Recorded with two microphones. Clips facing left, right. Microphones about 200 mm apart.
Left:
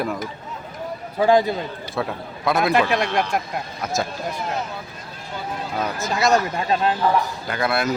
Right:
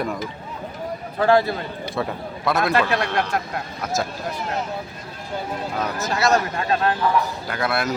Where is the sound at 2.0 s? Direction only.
Centre (ahead or behind).